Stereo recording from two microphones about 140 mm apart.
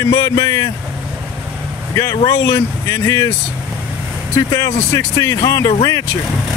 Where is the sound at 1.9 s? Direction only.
20° left (ahead or behind).